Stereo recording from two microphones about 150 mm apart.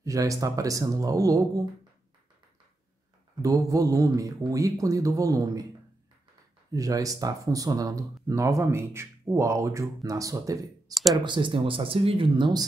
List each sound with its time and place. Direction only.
0.0 s speech: 20° right (ahead or behind)
3.4 s speech: 20° right (ahead or behind)
6.7 s speech: 25° right (ahead or behind)
11.2 s speech: 35° right (ahead or behind)